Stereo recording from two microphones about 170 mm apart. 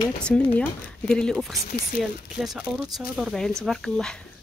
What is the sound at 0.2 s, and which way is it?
Speech, 5° left (ahead or behind).